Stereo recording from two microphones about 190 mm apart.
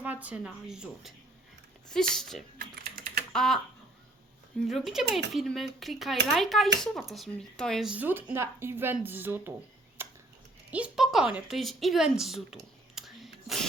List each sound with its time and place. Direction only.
0.0 s a woman's voice: 10° right (ahead or behind)
2.6 s typing: 45° right (ahead or behind)
3.3 s a woman's voice: centre (ahead or behind)
4.6 s a woman's voice: centre (ahead or behind)
10.0 s a sound: 10° right (ahead or behind)
10.7 s a woman's voice: 5° right (ahead or behind)
12.5 s whispering: centre (ahead or behind)